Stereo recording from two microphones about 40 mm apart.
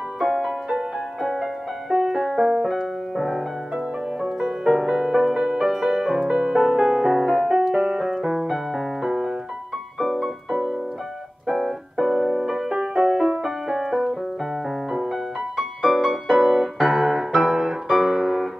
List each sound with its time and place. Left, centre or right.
0.2 s music: centre
3.7 s music: centre
8.2 s piano: centre
10.2 s piano: centre
13.4 s music: centre
15.5 s music: centre